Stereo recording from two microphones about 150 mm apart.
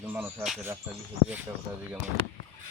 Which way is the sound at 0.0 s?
15° right (ahead or behind).